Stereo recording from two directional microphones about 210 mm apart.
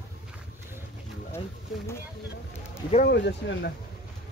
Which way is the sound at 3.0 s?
55° left (ahead or behind).